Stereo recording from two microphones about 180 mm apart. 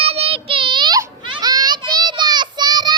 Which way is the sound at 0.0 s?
35° right (ahead or behind).